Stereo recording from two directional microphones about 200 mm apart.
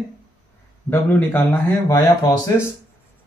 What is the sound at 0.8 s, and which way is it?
Speech, 10° left (ahead or behind).